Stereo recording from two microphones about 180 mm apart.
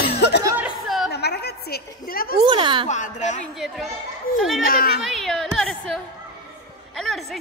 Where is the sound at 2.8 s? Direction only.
40° left (ahead or behind).